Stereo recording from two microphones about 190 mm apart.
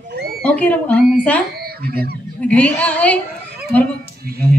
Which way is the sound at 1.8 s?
55° right (ahead or behind).